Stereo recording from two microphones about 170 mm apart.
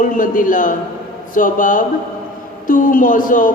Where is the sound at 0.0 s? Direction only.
50° left (ahead or behind).